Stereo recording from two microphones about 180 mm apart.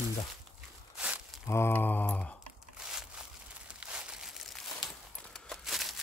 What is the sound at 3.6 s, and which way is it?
Crumpling, 5° right (ahead or behind).